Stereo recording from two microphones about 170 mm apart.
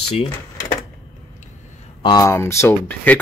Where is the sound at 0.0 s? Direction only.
35° left (ahead or behind).